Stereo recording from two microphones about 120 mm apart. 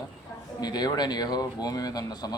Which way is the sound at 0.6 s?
35° left (ahead or behind).